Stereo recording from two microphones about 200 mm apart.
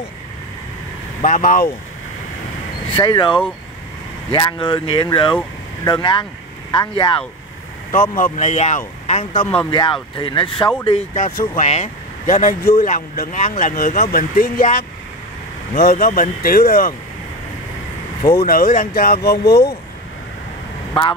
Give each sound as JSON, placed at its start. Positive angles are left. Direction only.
{"t": 1.2, "sound": "speech", "side_deg": 40}
{"t": 2.9, "sound": "speech", "side_deg": 25}
{"t": 9.6, "sound": "speech", "side_deg": 25}
{"t": 11.1, "sound": "speech", "side_deg": 40}
{"t": 18.2, "sound": "speech", "side_deg": 50}